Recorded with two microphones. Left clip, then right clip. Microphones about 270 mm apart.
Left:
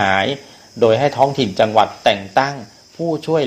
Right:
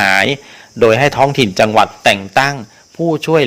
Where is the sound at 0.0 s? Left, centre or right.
Right.